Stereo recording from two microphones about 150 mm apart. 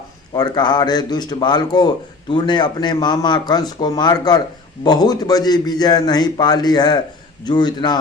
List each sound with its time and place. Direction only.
0.3 s a man's voice: 30° left (ahead or behind)